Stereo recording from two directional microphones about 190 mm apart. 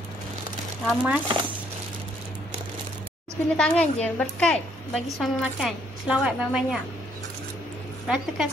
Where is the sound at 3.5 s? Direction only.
5° left (ahead or behind).